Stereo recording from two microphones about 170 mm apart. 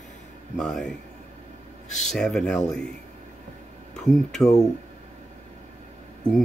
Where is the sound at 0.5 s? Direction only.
5° left (ahead or behind).